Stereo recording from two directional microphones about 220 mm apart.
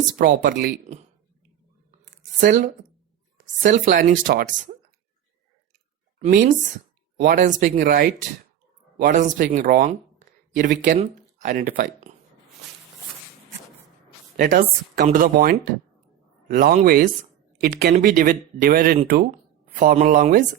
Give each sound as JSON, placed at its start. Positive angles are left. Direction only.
{"t": 0.2, "sound": "speech", "side_deg": -40}
{"t": 2.0, "sound": "a sound", "side_deg": -40}
{"t": 3.6, "sound": "speech", "side_deg": -40}
{"t": 6.1, "sound": "speech", "side_deg": -35}
{"t": 14.3, "sound": "speech", "side_deg": -40}